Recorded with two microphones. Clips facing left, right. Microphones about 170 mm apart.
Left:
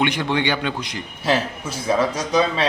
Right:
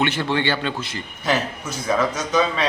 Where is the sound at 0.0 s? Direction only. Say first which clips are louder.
Left 1 dB; 15° left (ahead or behind).